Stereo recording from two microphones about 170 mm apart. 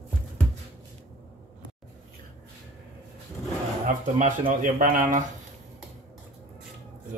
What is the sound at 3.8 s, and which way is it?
Speech, 50° right (ahead or behind).